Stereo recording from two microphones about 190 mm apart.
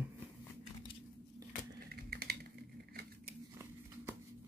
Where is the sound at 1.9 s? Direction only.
55° right (ahead or behind).